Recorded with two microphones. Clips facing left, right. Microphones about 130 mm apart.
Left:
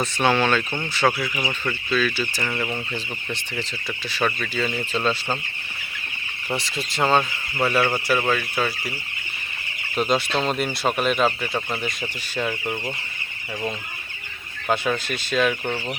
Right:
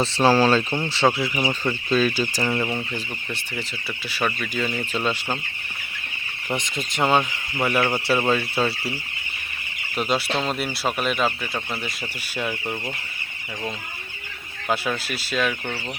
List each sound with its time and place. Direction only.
0.0 s speech: 30° right (ahead or behind)
2.4 s speech: 20° right (ahead or behind)
2.6 s speech: 5° right (ahead or behind)
4.1 s speech: 10° right (ahead or behind)
6.5 s speech: 15° right (ahead or behind)
9.9 s speech: 5° right (ahead or behind)
14.7 s speech: 5° right (ahead or behind)